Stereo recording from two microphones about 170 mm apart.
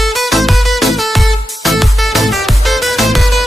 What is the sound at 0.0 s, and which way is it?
Music, centre (ahead or behind).